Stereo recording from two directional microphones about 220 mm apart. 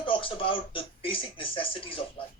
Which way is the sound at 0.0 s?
25° left (ahead or behind).